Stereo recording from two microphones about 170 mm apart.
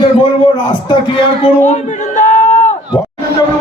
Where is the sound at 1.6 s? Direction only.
45° left (ahead or behind).